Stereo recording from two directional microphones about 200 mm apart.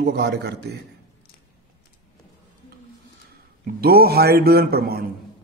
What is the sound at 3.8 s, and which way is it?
Speech, 50° right (ahead or behind).